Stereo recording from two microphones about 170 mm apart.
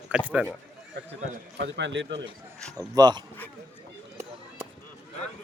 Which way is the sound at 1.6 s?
90° right.